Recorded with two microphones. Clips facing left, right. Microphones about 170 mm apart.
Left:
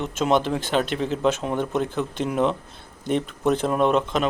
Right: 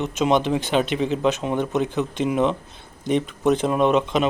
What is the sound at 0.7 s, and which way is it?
Speech, 5° right (ahead or behind).